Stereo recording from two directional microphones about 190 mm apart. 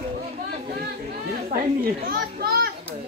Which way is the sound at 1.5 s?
50° right (ahead or behind).